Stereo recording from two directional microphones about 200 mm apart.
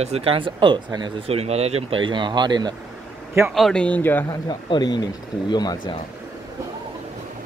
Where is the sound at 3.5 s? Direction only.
5° left (ahead or behind); by 5.8 s 20° left (ahead or behind).